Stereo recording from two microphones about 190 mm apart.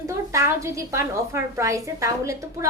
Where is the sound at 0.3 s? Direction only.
15° right (ahead or behind).